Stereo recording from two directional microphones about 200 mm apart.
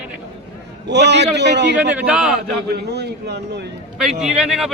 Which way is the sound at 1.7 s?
5° right (ahead or behind).